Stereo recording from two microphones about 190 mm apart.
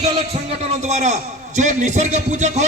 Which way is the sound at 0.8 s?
35° right (ahead or behind).